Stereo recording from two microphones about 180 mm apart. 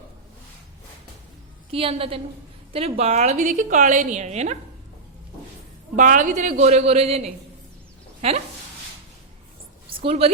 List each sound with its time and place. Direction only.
1.7 s a woman's voice: 30° right (ahead or behind)
6.0 s a woman's voice: 45° right (ahead or behind)
10.0 s a woman's voice: 35° right (ahead or behind)